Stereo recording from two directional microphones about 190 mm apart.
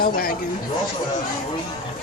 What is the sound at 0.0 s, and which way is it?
Speech, 50° left (ahead or behind).